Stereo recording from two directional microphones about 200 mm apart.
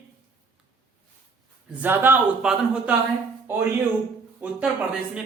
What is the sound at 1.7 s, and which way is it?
Speech, 10° right (ahead or behind).